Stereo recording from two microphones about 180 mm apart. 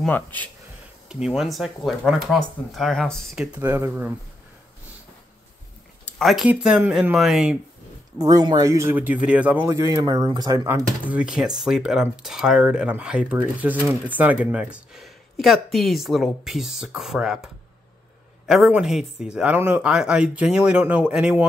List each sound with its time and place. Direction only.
0.0 s speech: 10° left (ahead or behind)
1.0 s speech: 5° right (ahead or behind)
6.1 s speech: centre (ahead or behind)
8.2 s speech: 20° right (ahead or behind)
11.1 s speech: 5° right (ahead or behind)
18.5 s speech: 5° right (ahead or behind)